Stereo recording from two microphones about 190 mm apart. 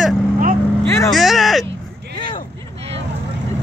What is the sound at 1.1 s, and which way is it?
Speech, centre (ahead or behind).